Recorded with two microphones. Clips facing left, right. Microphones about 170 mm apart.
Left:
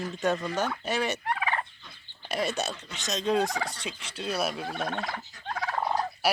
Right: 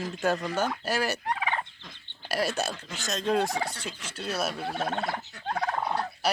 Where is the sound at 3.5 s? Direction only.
25° right (ahead or behind).